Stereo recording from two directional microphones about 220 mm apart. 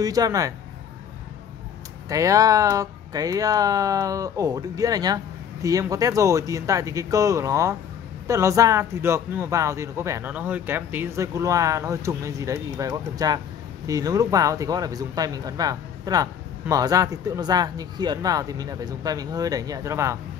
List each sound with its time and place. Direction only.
0.0 s speech: 15° right (ahead or behind)
2.0 s speech: 15° right (ahead or behind)